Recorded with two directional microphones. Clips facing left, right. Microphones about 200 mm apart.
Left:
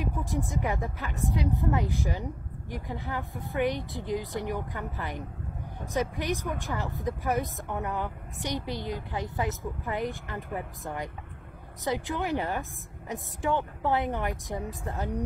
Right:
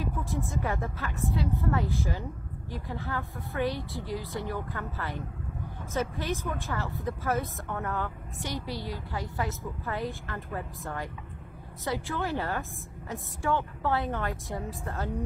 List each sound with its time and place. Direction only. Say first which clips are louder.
0.0 s a woman's voice: left 1 dB; 15° left (ahead or behind)